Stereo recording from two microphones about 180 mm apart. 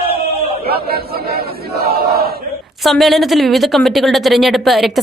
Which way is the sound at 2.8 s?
Centre (ahead or behind).